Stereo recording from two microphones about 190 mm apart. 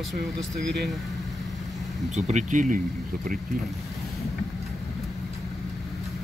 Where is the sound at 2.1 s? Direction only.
40° right (ahead or behind).